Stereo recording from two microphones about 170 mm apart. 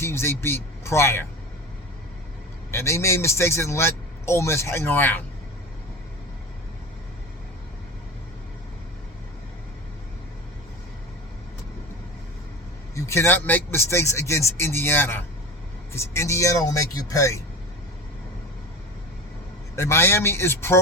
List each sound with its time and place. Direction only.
0.0 s speech: 15° left (ahead or behind)
2.7 s speech: 15° left (ahead or behind)
12.9 s speech: 15° left (ahead or behind)
19.7 s speech: 15° left (ahead or behind)